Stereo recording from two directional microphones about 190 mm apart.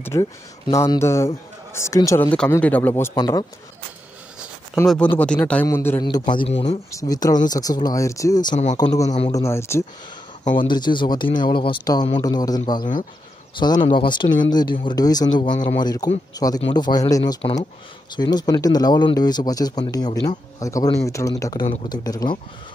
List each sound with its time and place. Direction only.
0.0 s a man's voice: 15° left (ahead or behind)
5.1 s a man's voice: 5° left (ahead or behind)
6.0 s speech: 25° left (ahead or behind)
6.9 s a man's voice: 20° left (ahead or behind)
10.5 s a man's voice: 25° left (ahead or behind)